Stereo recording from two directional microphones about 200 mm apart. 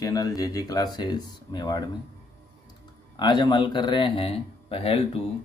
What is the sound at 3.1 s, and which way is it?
Speech, 20° left (ahead or behind).